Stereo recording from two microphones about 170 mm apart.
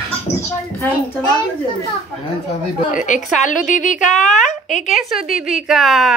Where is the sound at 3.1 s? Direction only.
45° left (ahead or behind).